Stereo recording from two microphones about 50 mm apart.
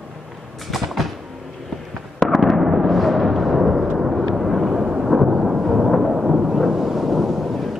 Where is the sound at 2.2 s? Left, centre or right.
Centre.